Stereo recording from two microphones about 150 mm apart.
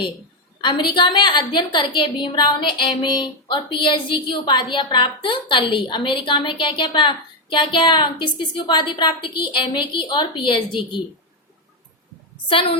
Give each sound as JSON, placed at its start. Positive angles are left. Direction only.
{"t": 0.6, "sound": "a woman's voice", "side_deg": 30}
{"t": 12.5, "sound": "a woman's voice", "side_deg": 35}